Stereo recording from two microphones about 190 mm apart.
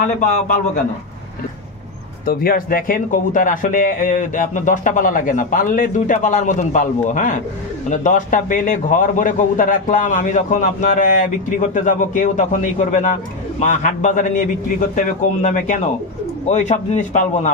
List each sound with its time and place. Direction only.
0.2 s a man's voice: 45° left (ahead or behind)
2.2 s a man's voice: 50° left (ahead or behind)